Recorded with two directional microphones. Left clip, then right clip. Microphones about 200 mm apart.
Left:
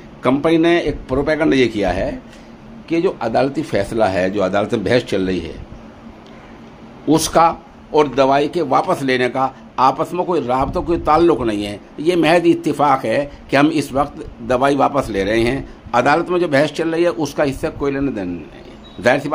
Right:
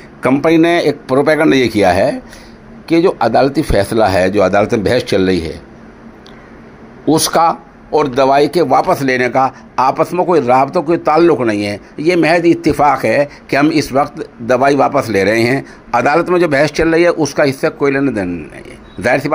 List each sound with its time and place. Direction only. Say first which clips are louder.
0.3 s speech: right 3 dB; 20° right (ahead or behind)
7.1 s a man's voice: right 2 dB; 20° right (ahead or behind)